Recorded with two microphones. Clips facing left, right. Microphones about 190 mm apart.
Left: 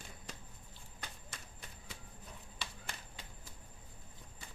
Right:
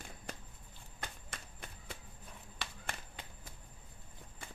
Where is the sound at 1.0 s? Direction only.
60° right (ahead or behind).